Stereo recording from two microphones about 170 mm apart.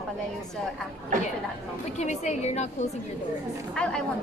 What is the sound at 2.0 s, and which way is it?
Speech, 40° left (ahead or behind).